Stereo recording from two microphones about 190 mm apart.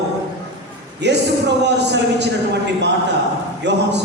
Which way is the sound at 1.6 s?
65° right (ahead or behind).